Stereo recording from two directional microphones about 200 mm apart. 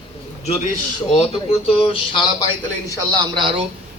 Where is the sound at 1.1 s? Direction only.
30° left (ahead or behind).